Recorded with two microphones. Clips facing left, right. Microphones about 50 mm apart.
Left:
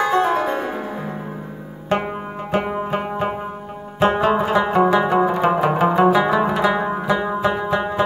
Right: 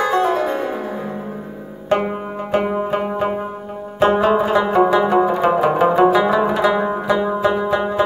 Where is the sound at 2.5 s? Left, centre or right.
Centre.